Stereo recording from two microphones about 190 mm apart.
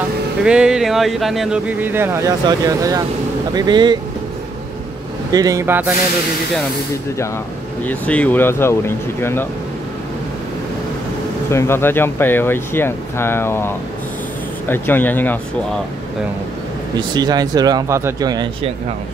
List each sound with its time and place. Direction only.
0.4 s speech: 5° right (ahead or behind); by 4.0 s 25° right (ahead or behind)
5.3 s speech: 20° right (ahead or behind)
7.8 s speech: 10° left (ahead or behind)
11.5 s speech: 15° left (ahead or behind)
16.9 s speech: 20° right (ahead or behind)